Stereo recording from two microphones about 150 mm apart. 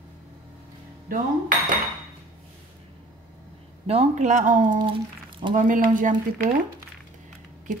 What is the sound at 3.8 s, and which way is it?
Speech, 45° right (ahead or behind).